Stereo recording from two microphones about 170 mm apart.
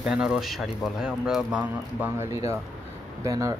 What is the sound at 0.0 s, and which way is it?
A man's voice, 5° right (ahead or behind).